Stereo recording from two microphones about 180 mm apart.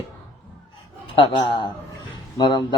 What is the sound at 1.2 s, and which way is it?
Speech, 25° left (ahead or behind).